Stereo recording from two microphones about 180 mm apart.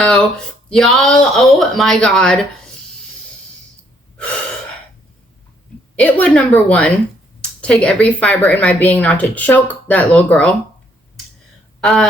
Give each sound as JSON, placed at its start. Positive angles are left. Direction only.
{"t": 0.0, "sound": "speech", "side_deg": 5}
{"t": 6.0, "sound": "speech", "side_deg": 5}
{"t": 11.8, "sound": "speech", "side_deg": 0}